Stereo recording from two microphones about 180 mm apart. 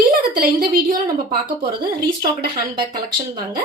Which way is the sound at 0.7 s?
55° right (ahead or behind).